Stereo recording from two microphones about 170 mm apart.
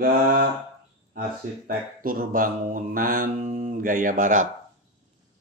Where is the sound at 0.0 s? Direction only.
65° right (ahead or behind).